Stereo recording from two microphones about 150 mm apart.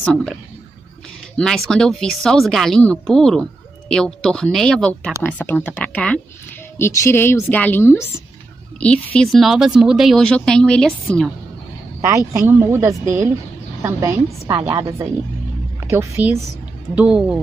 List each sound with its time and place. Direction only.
0.0 s speech: 5° left (ahead or behind)
1.3 s a woman's voice: 5° left (ahead or behind)
6.8 s a woman's voice: 20° left (ahead or behind); by 11.3 s 5° left (ahead or behind)
12.3 s speech: 20° right (ahead or behind)
15.8 s a woman's voice: 15° right (ahead or behind)